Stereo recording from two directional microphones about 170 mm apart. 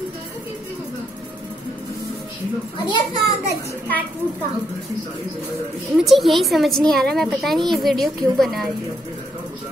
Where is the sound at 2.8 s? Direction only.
25° left (ahead or behind).